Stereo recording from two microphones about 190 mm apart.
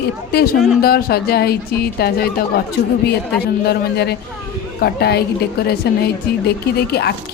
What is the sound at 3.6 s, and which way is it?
A woman's voice, 60° left (ahead or behind).